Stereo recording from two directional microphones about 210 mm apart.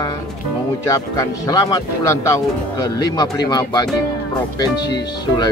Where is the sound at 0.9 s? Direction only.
15° left (ahead or behind).